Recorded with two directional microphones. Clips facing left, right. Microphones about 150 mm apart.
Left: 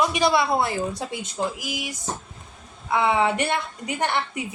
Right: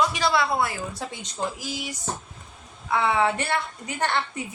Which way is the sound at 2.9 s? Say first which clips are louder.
Left 2 dB; 15° left (ahead or behind).